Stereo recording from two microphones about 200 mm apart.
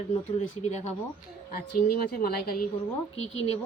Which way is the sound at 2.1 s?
50° left (ahead or behind).